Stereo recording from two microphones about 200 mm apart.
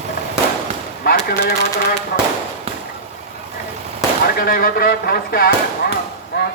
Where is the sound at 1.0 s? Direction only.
50° left (ahead or behind).